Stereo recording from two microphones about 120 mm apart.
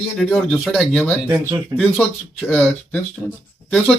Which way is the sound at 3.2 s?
20° left (ahead or behind).